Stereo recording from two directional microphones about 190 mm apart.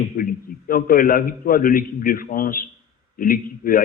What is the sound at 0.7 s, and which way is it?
A man's voice, 50° left (ahead or behind).